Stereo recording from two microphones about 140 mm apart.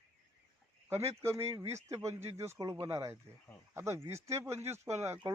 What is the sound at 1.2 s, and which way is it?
Speech, 20° right (ahead or behind).